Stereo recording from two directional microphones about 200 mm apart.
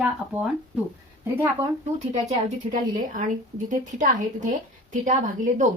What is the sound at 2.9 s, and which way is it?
A woman's voice, 40° right (ahead or behind).